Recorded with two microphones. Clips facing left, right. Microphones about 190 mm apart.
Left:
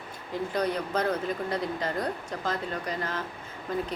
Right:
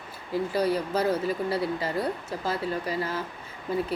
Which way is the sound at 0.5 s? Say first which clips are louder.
Right 2 dB; 5° right (ahead or behind).